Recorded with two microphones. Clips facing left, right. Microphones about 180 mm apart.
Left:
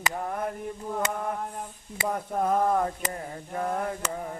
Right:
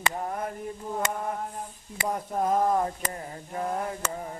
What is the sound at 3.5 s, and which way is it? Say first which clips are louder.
Mantra: left 1 dB; 50° left (ahead or behind).